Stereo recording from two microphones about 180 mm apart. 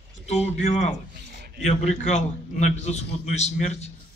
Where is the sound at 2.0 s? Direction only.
40° left (ahead or behind).